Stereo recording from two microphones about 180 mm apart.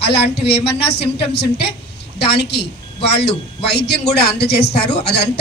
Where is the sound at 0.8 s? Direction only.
65° left (ahead or behind).